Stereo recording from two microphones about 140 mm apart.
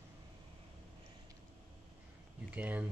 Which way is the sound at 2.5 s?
10° right (ahead or behind).